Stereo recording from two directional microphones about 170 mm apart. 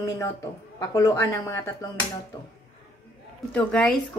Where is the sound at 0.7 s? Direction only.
15° left (ahead or behind).